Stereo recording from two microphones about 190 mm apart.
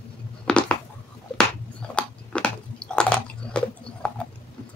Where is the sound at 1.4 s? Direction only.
5° left (ahead or behind).